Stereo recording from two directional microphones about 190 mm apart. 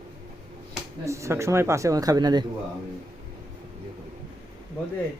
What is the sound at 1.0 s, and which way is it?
Speech, 15° right (ahead or behind).